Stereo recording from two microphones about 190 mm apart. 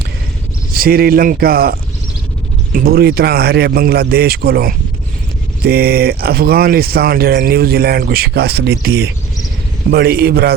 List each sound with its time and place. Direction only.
0.7 s speech: 50° right (ahead or behind)